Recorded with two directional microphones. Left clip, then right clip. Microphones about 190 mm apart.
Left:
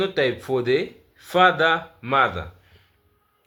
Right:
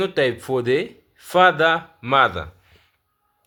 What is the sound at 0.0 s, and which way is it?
Speech, 30° right (ahead or behind).